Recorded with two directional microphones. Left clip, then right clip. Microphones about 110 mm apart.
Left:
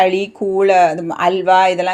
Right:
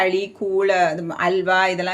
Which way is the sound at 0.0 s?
50° left (ahead or behind).